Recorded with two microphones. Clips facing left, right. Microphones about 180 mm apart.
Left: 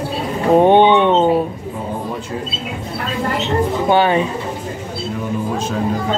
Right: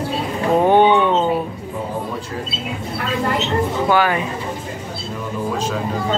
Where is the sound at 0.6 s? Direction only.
25° left (ahead or behind).